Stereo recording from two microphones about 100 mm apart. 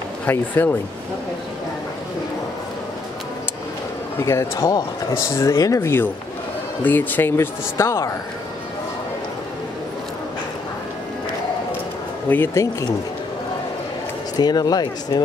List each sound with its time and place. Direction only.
0.3 s speech: 20° left (ahead or behind)
4.2 s speech: 30° left (ahead or behind)
12.3 s speech: 20° left (ahead or behind)
14.3 s speech: 40° left (ahead or behind)